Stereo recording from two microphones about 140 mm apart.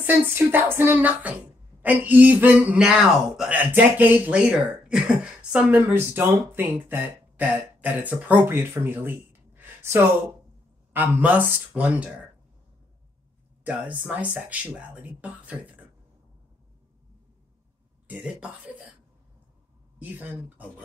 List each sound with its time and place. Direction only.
0.0 s speech: 15° right (ahead or behind)
13.7 s speech: 10° right (ahead or behind)
18.0 s speech: 10° right (ahead or behind)
20.0 s speech: 15° right (ahead or behind)